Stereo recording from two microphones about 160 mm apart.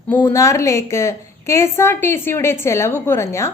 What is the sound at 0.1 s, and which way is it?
A woman's voice, 15° left (ahead or behind).